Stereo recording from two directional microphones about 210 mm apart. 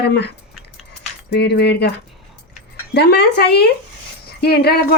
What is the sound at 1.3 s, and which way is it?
Speech, 55° left (ahead or behind).